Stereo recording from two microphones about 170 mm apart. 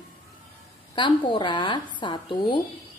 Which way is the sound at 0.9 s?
30° left (ahead or behind).